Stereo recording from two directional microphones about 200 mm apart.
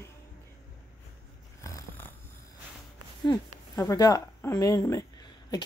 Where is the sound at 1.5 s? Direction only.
15° left (ahead or behind).